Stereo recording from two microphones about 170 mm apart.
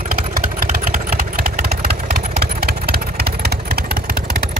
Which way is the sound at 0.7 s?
50° right (ahead or behind).